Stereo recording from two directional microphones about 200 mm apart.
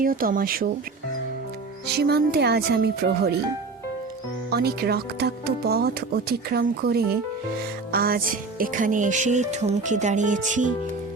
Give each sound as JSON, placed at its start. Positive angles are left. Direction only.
{"t": 0.0, "sound": "speech", "side_deg": -45}
{"t": 2.0, "sound": "speech", "side_deg": -55}
{"t": 4.5, "sound": "speech", "side_deg": -50}
{"t": 7.9, "sound": "music", "side_deg": -45}